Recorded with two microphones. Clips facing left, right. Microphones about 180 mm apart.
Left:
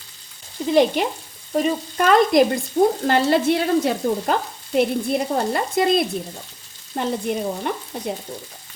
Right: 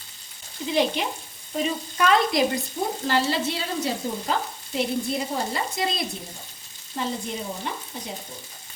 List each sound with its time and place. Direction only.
0.7 s frying: 50° left (ahead or behind)
2.8 s stir: 55° left (ahead or behind)